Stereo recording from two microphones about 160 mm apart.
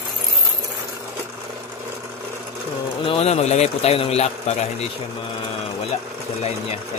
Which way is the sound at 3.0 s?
35° left (ahead or behind).